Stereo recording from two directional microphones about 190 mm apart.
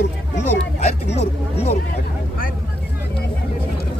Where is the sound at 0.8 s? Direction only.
35° left (ahead or behind).